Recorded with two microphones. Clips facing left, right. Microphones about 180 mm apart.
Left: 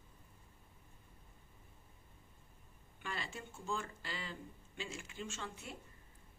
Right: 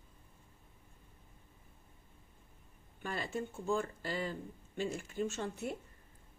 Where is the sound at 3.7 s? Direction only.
40° right (ahead or behind).